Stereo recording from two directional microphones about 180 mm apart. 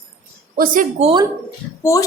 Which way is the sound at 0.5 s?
50° right (ahead or behind).